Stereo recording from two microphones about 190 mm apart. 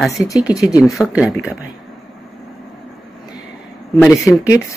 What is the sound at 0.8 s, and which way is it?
Speech, centre (ahead or behind).